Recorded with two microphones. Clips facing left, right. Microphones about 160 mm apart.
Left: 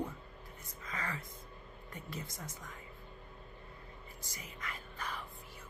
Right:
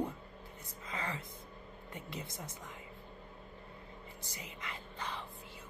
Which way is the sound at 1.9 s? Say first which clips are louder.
Right 1 dB; 20° right (ahead or behind).